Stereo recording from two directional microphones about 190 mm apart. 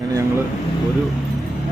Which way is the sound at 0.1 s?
15° right (ahead or behind).